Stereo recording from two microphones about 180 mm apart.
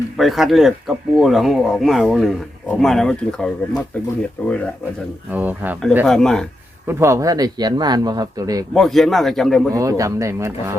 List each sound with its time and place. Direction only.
0.2 s speech: centre (ahead or behind)
5.3 s speech: 10° right (ahead or behind)
6.1 s speech: 5° left (ahead or behind)
6.8 s speech: 15° right (ahead or behind)
8.7 s speech: centre (ahead or behind)
9.7 s speech: 15° right (ahead or behind)